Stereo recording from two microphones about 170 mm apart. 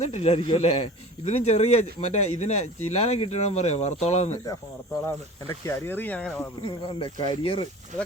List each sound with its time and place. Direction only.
0.0 s speech: 40° left (ahead or behind)
5.6 s speech: 15° left (ahead or behind)
6.6 s speech: 30° left (ahead or behind)